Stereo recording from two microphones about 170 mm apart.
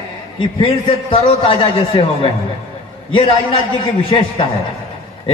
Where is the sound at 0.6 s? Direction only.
35° left (ahead or behind).